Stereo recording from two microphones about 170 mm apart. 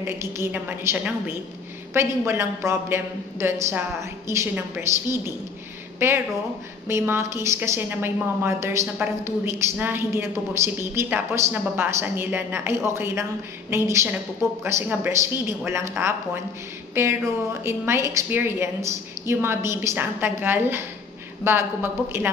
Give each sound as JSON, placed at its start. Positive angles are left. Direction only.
{"t": 0.0, "sound": "a woman's voice", "side_deg": -15}